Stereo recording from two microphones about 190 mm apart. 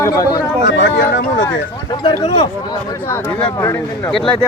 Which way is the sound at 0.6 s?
70° left (ahead or behind).